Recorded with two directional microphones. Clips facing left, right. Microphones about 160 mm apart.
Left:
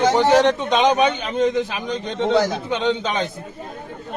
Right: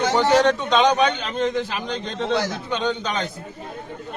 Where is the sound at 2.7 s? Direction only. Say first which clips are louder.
Left 1 dB; 20° left (ahead or behind).